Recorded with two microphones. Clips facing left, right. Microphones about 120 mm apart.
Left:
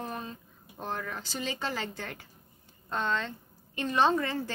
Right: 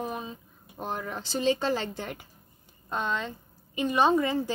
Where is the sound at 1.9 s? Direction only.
15° right (ahead or behind).